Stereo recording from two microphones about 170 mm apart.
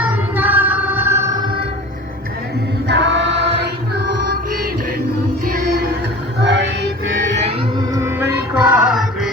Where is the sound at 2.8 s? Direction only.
90° right; by 4.9 s 60° right (ahead or behind).